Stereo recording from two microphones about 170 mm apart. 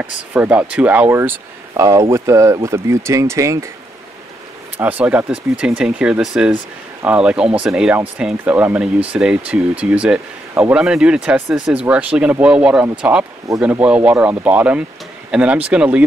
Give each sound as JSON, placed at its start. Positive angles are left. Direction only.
{"t": 0.0, "sound": "speech", "side_deg": -10}
{"t": 4.7, "sound": "speech", "side_deg": -10}